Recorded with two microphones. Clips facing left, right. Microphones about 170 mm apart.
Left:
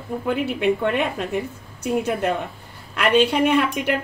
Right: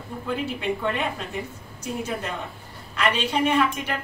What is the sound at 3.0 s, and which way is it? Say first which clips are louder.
Speech: left 6 dB; 60° left (ahead or behind).